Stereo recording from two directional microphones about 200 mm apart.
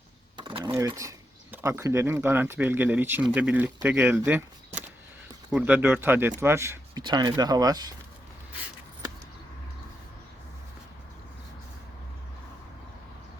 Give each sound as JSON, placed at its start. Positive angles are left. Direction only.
{"t": 0.3, "sound": "a sound", "side_deg": -25}
{"t": 0.8, "sound": "speech", "side_deg": -15}
{"t": 5.5, "sound": "speech", "side_deg": -5}